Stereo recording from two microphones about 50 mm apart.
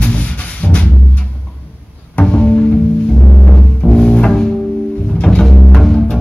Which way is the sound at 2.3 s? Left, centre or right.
Centre.